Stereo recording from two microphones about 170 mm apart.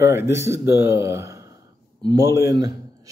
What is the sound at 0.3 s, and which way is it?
A man's voice, 15° right (ahead or behind).